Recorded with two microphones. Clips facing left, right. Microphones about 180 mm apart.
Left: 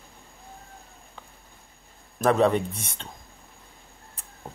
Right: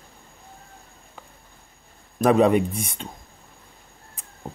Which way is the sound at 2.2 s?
15° right (ahead or behind).